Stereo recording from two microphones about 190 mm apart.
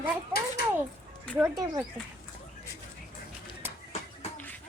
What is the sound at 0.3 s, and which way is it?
Speech, 10° right (ahead or behind).